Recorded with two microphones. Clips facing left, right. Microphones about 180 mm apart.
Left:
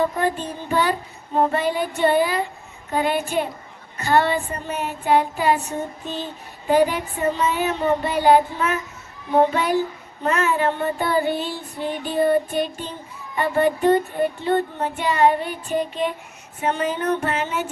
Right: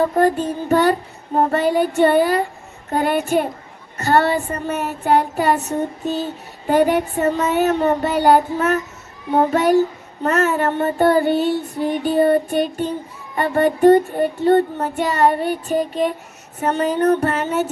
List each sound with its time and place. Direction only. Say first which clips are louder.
0.2 s child singing: right 7 dB; 45° right (ahead or behind)
6.7 s child singing: right 3 dB; 50° right (ahead or behind)
16.6 s a sound: right 5 dB; 40° right (ahead or behind)